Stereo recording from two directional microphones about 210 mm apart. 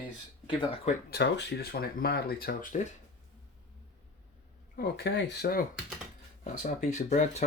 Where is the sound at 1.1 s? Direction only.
55° left (ahead or behind); by 2.9 s 35° left (ahead or behind).